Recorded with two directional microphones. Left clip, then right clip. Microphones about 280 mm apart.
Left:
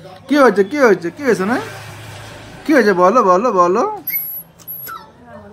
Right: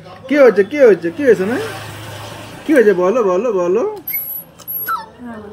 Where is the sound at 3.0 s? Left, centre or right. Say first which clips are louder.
Left 3 dB; left.